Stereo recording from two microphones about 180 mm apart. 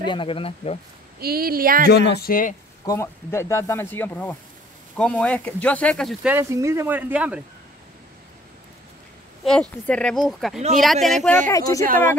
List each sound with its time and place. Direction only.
0.0 s speech: 25° left (ahead or behind)
1.2 s speech: 55° right (ahead or behind)
1.9 s speech: 65° left (ahead or behind)
2.8 s speech: 15° left (ahead or behind)
6.2 s speech: 15° right (ahead or behind)
9.4 s speech: 5° left (ahead or behind)
11.4 s speech: 20° left (ahead or behind)